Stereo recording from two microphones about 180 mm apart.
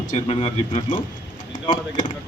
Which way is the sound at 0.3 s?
30° left (ahead or behind).